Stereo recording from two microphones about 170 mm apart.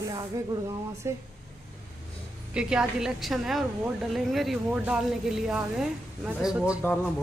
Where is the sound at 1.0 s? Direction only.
15° right (ahead or behind).